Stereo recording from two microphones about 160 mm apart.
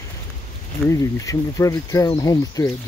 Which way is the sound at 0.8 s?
20° left (ahead or behind).